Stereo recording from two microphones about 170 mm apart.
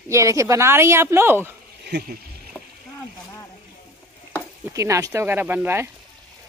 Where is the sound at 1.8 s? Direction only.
65° right (ahead or behind).